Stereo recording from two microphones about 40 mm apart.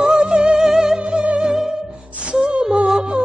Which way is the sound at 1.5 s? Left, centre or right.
Centre.